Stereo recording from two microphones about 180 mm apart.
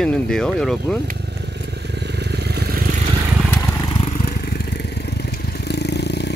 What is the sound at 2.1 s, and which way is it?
Vehicle, 65° right (ahead or behind).